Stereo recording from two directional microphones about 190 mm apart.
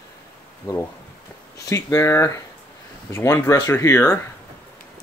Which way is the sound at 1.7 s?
15° left (ahead or behind).